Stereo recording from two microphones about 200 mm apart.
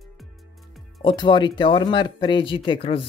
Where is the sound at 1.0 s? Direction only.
25° left (ahead or behind).